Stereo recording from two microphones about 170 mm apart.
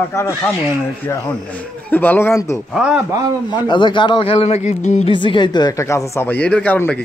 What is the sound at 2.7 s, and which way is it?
Speech, 5° right (ahead or behind).